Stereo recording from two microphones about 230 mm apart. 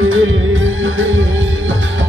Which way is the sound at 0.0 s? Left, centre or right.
Right.